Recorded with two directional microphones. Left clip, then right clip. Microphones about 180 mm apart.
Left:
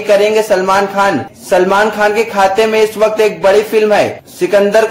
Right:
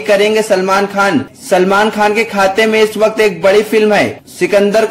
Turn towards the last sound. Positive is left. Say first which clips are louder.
# left 1 dB
turn(degrees=-35)  # may be behind; listen again after turning